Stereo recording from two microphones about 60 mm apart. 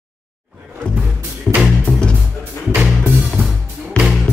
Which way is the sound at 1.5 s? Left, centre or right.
Centre.